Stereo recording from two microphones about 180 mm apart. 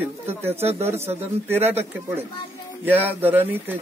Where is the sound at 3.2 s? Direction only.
10° right (ahead or behind).